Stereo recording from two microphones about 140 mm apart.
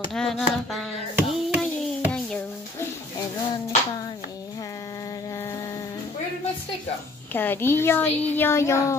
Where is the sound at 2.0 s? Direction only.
10° left (ahead or behind).